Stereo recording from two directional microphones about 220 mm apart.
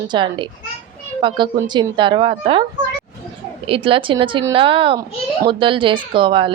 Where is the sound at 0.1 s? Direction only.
20° right (ahead or behind).